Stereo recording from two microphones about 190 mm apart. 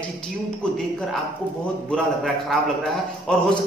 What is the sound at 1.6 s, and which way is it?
Speech, 5° left (ahead or behind).